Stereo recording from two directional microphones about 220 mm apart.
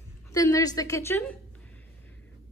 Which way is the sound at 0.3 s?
15° left (ahead or behind).